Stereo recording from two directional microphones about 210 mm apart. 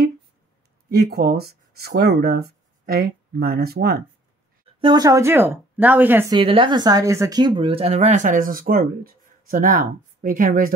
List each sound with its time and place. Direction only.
0.8 s speech: 45° right (ahead or behind)
4.7 s speech: 20° right (ahead or behind)
6.3 s speech: 25° right (ahead or behind); by 10.7 s 40° right (ahead or behind)